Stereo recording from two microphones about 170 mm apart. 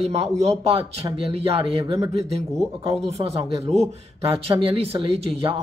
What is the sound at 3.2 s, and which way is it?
Speech, 35° right (ahead or behind).